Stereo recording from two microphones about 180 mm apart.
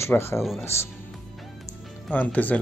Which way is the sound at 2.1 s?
10° left (ahead or behind).